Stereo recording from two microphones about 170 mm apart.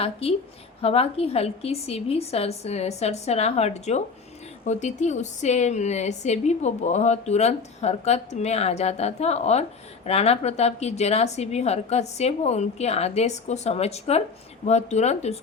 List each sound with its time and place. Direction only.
0.0 s a woman's voice: 35° left (ahead or behind)